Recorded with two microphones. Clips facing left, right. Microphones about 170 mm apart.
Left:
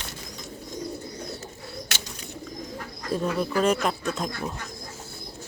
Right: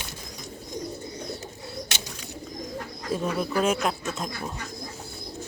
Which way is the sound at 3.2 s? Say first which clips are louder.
Left 2 dB; 5° right (ahead or behind).